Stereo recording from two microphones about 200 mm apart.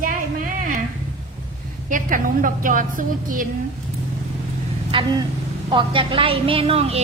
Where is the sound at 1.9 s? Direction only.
40° right (ahead or behind).